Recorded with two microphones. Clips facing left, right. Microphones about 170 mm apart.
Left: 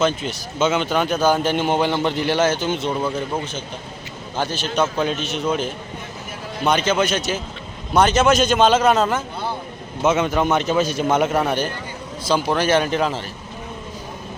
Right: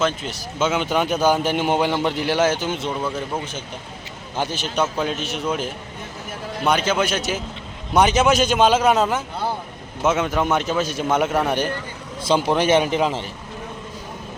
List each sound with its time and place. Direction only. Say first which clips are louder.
0.0 s a man's voice: left 2 dB; centre (ahead or behind)
6.7 s a man's voice: left 1 dB; 5° right (ahead or behind)
10.0 s a man's voice: left 2 dB; centre (ahead or behind)
11.4 s a man's voice: even; 15° right (ahead or behind)